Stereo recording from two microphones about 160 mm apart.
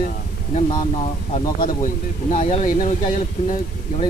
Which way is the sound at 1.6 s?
55° left (ahead or behind).